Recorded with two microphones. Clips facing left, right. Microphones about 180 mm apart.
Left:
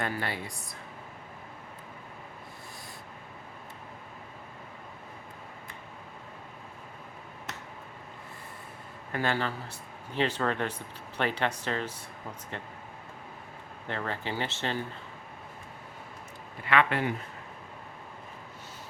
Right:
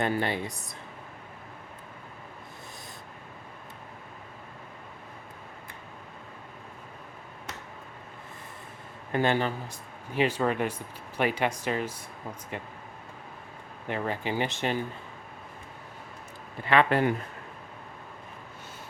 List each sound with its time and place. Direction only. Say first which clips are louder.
0.0 s speech: right 5 dB; 20° right (ahead or behind)
9.1 s speech: right 4 dB; 20° right (ahead or behind)
13.8 s speech: right 4 dB; 15° right (ahead or behind)
16.6 s speech: right 3 dB; 35° right (ahead or behind)